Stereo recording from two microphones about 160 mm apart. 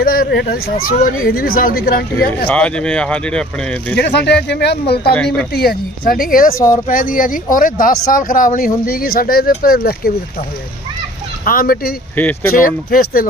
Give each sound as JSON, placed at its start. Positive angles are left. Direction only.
{"t": 0.0, "sound": "speech", "side_deg": 65}
{"t": 2.5, "sound": "speech", "side_deg": 5}
{"t": 3.9, "sound": "speech", "side_deg": 90}
{"t": 5.1, "sound": "speech", "side_deg": 5}
{"t": 5.5, "sound": "speech", "side_deg": 70}
{"t": 11.4, "sound": "speech", "side_deg": 65}
{"t": 12.1, "sound": "speech", "side_deg": 10}
{"t": 12.6, "sound": "speech", "side_deg": 65}